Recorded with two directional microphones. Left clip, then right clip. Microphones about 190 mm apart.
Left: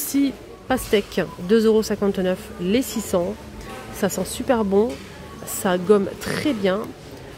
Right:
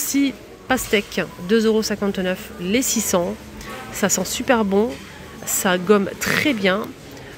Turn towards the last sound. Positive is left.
turn(degrees=10)  # may be behind; listen again after turning